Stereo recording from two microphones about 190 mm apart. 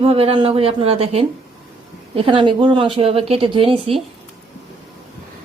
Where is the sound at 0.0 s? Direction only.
30° right (ahead or behind).